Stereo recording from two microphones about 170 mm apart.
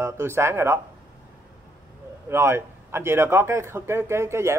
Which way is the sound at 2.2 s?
15° right (ahead or behind).